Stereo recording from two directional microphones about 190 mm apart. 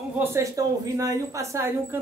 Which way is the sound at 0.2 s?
15° right (ahead or behind).